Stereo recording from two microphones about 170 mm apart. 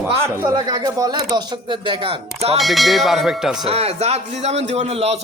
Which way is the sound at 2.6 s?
Centre (ahead or behind).